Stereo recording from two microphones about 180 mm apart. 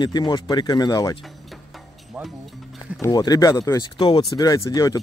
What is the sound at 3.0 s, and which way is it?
Speech, 20° left (ahead or behind).